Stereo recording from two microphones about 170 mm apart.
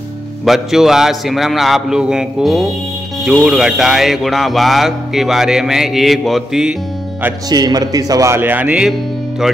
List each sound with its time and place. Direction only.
0.5 s speech: centre (ahead or behind)
7.4 s speech: 25° right (ahead or behind); by 8.9 s 5° right (ahead or behind)